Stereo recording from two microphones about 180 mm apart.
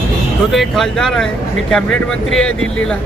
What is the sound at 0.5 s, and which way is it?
Speech, centre (ahead or behind).